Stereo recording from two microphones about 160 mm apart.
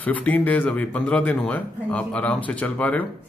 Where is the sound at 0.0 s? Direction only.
10° left (ahead or behind).